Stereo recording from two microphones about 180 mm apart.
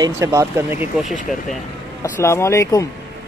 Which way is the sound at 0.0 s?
15° right (ahead or behind).